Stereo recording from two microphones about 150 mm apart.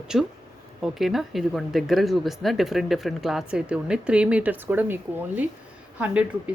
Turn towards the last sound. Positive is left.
turn(degrees=-10)  # may be behind; listen again after turning